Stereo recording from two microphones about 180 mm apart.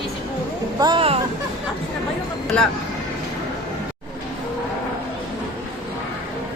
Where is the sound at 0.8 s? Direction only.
25° right (ahead or behind).